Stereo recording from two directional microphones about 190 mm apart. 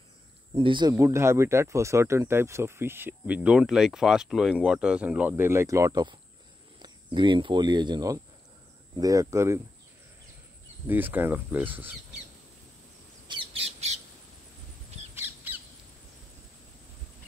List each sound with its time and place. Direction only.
0.6 s speech: 25° right (ahead or behind)
10.9 s speech: 10° right (ahead or behind)
13.3 s bird: 30° right (ahead or behind)
15.1 s squawk: 10° right (ahead or behind)